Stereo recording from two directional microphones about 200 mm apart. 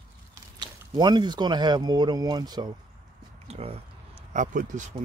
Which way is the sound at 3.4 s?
30° right (ahead or behind).